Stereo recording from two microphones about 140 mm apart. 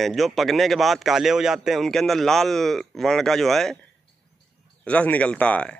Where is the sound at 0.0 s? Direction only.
Centre (ahead or behind).